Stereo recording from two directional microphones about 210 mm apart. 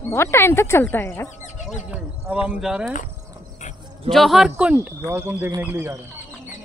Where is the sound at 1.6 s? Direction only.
35° left (ahead or behind).